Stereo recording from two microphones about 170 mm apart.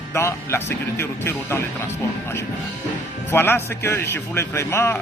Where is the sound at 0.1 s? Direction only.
15° left (ahead or behind).